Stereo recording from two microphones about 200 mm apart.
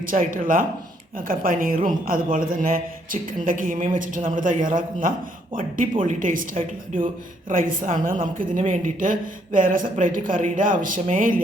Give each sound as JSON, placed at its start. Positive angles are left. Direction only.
{"t": 0.1, "sound": "a woman's voice", "side_deg": -45}